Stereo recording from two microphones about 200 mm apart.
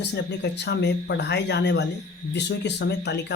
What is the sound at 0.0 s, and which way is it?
Speech, 60° left (ahead or behind).